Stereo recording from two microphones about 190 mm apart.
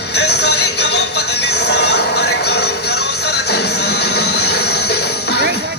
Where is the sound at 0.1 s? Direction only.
60° left (ahead or behind).